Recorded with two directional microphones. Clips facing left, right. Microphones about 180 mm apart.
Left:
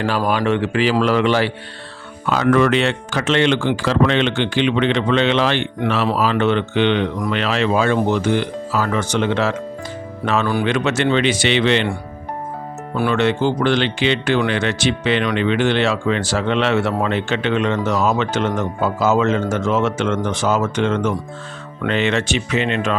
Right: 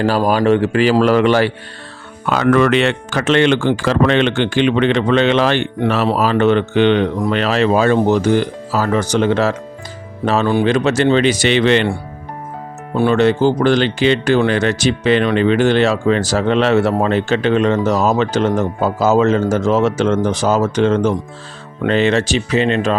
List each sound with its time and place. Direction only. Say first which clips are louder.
0.3 s speech: right 5 dB; 40° right (ahead or behind)
2.2 s speech: right 2 dB; 60° right (ahead or behind); by 9.6 s 40° right (ahead or behind)
10.4 s speech: right 7 dB; 25° right (ahead or behind); by 11.9 s 45° right (ahead or behind)
13.0 s speech: right 5 dB; 35° right (ahead or behind)